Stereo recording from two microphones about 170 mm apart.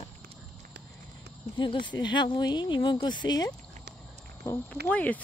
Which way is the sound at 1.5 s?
30° left (ahead or behind).